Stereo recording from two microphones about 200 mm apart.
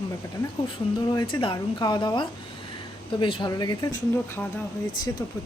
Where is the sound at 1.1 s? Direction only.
20° left (ahead or behind).